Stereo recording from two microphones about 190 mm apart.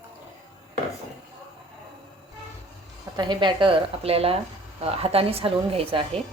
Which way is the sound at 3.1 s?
25° right (ahead or behind).